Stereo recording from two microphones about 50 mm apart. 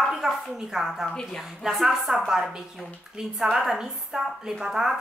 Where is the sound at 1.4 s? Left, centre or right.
Centre.